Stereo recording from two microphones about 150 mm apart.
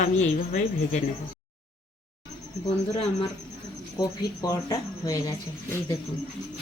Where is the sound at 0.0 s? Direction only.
55° left (ahead or behind).